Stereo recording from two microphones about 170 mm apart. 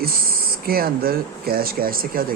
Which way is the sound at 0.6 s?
65° right (ahead or behind).